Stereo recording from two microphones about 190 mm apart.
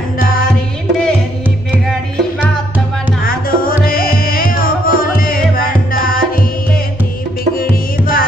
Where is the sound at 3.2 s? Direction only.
50° left (ahead or behind).